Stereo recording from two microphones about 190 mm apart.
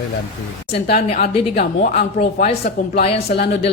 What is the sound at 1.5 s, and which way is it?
A man's voice, 50° left (ahead or behind).